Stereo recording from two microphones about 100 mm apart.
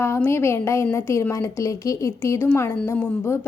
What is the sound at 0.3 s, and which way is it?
Speech, 25° left (ahead or behind).